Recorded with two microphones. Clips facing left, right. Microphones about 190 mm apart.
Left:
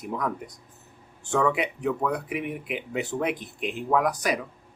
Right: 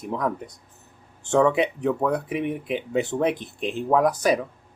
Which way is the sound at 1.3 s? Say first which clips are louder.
Right 5 dB; 25° right (ahead or behind).